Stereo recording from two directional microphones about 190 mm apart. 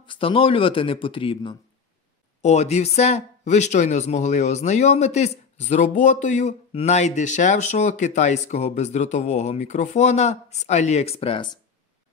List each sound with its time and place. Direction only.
0.0 s speech: 25° left (ahead or behind)
2.4 s speech: 35° left (ahead or behind)